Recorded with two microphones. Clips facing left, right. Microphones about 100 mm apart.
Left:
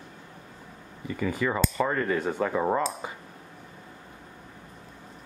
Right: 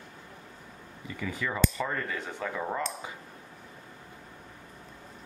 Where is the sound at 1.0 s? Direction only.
50° left (ahead or behind).